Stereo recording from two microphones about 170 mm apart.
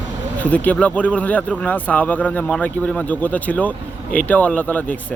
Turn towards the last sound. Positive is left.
turn(degrees=10)  # may be behind; listen again after turning